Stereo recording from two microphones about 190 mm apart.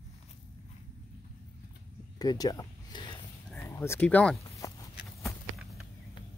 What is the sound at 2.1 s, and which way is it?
Speech, 20° left (ahead or behind).